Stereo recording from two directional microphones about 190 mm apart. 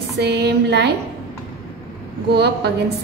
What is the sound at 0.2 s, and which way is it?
Speech, 60° right (ahead or behind).